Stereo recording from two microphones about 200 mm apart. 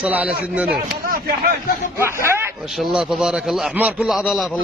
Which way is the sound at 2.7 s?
Centre (ahead or behind).